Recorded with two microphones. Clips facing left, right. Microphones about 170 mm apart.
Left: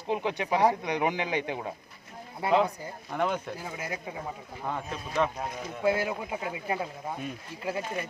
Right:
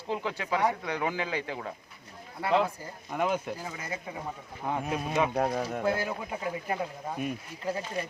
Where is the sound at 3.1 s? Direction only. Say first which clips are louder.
Even; 5° right (ahead or behind).